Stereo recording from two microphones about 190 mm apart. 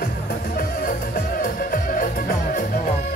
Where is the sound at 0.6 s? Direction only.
45° left (ahead or behind).